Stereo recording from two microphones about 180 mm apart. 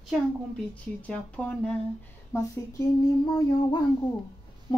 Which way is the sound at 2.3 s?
15° left (ahead or behind).